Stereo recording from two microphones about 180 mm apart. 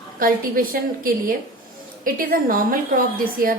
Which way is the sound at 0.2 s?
55° right (ahead or behind).